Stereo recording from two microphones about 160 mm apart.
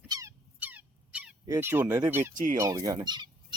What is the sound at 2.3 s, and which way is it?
Speech, 55° right (ahead or behind).